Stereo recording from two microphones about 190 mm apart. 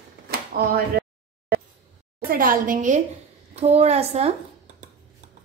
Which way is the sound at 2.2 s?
45° right (ahead or behind).